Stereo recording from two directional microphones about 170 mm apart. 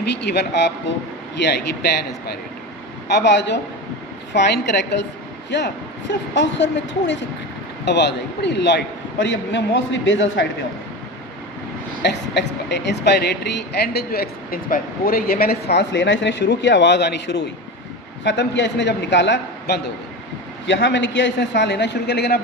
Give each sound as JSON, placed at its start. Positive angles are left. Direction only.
{"t": 0.0, "sound": "speech", "side_deg": 80}
{"t": 1.4, "sound": "a man's voice", "side_deg": 80}
{"t": 3.1, "sound": "a man's voice", "side_deg": 90}
{"t": 12.0, "sound": "a man's voice", "side_deg": 90}